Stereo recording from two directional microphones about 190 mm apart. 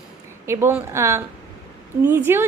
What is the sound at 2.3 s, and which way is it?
Speech, 15° right (ahead or behind).